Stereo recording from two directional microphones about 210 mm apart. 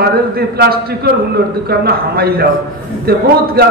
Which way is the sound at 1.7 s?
45° right (ahead or behind).